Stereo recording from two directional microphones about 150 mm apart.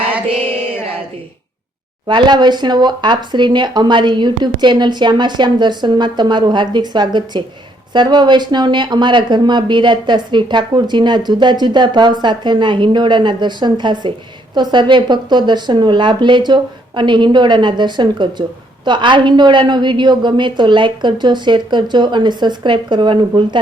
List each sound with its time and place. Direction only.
2.0 s speech: 30° right (ahead or behind)